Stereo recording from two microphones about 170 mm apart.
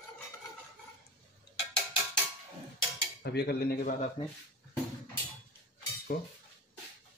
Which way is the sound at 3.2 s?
70° left (ahead or behind).